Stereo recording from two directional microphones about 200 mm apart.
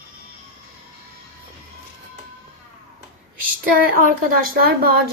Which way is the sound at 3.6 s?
45° right (ahead or behind).